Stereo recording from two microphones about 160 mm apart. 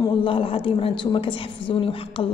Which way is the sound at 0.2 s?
35° left (ahead or behind).